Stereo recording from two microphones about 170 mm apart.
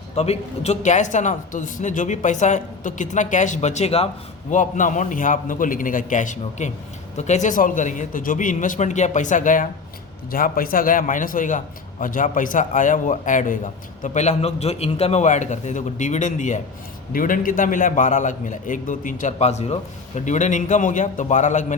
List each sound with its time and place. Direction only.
0.2 s a man's voice: 40° left (ahead or behind)
4.5 s a man's voice: 50° left (ahead or behind)